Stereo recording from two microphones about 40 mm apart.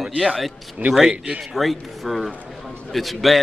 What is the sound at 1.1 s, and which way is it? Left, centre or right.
Speech, right.